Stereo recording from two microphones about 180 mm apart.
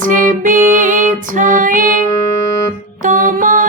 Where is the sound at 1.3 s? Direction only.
45° right (ahead or behind).